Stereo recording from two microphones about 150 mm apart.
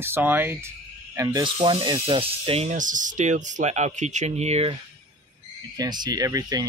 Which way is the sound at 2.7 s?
60° right (ahead or behind).